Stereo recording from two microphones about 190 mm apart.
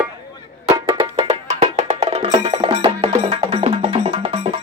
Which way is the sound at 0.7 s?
25° right (ahead or behind).